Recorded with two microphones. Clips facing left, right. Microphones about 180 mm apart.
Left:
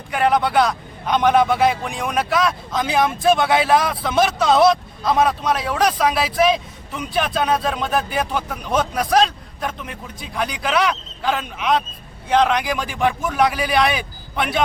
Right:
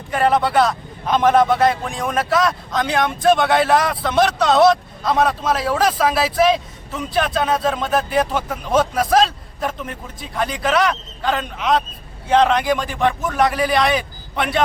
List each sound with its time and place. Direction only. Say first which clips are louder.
0.1 s a man's voice: right 1 dB; centre (ahead or behind)